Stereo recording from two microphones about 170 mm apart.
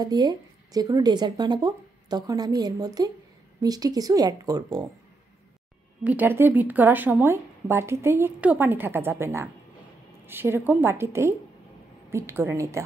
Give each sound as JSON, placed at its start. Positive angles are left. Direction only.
{"t": 0.0, "sound": "speech", "side_deg": -25}
{"t": 6.0, "sound": "a woman's voice", "side_deg": -10}